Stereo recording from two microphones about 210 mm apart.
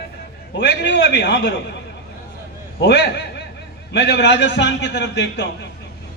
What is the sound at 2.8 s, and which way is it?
A man's voice, 55° left (ahead or behind).